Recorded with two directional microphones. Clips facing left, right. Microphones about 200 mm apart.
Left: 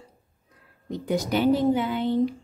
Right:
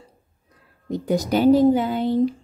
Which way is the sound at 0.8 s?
40° right (ahead or behind).